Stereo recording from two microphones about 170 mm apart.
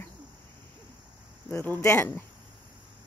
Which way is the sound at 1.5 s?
15° left (ahead or behind).